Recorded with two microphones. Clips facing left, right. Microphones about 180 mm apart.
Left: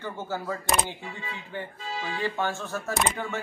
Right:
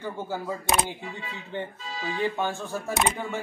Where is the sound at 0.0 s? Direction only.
15° right (ahead or behind).